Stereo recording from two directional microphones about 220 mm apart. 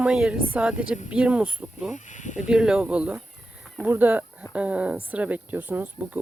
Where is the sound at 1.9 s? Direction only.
35° left (ahead or behind).